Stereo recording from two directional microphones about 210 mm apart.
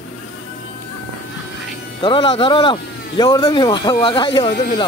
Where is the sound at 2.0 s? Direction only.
25° left (ahead or behind).